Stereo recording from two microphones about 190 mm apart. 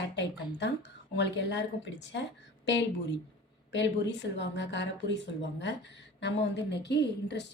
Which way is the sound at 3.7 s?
70° left (ahead or behind).